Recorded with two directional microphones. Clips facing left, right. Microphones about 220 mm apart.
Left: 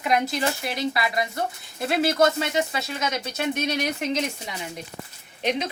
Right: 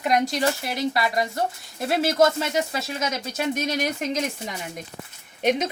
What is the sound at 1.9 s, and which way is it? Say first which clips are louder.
A woman's voice: right 1 dB; 45° right (ahead or behind).